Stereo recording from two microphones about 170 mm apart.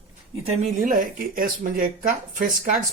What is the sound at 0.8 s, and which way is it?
Speech, 55° right (ahead or behind).